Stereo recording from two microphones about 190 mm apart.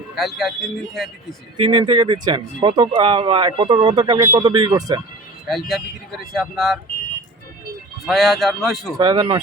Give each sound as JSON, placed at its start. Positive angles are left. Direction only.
{"t": 0.2, "sound": "speech", "side_deg": 0}
{"t": 1.5, "sound": "speech", "side_deg": -30}
{"t": 5.5, "sound": "speech", "side_deg": 0}
{"t": 8.0, "sound": "speech", "side_deg": 0}
{"t": 9.0, "sound": "speech", "side_deg": -25}